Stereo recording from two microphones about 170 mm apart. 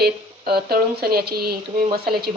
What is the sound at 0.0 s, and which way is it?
Speech, 70° right (ahead or behind).